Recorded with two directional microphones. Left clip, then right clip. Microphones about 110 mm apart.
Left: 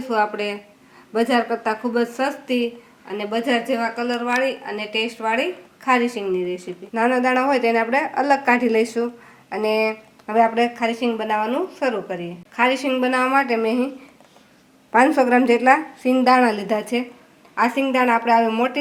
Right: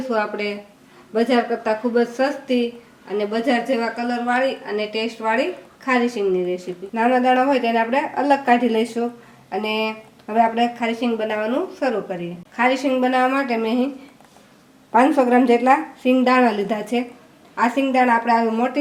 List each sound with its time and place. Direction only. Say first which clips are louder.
0.1 s a woman's voice: left 2 dB; 25° left (ahead or behind)
14.9 s a woman's voice: even; 20° left (ahead or behind)